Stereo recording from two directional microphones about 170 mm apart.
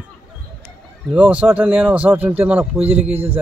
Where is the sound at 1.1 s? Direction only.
5° right (ahead or behind).